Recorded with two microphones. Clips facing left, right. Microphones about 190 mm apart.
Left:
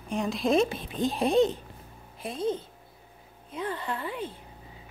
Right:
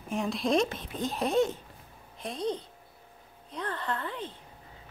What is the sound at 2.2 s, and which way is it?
A woman's voice, 5° left (ahead or behind).